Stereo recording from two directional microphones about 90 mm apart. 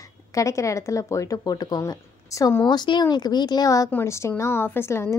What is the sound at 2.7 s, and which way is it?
A woman's voice, 55° left (ahead or behind).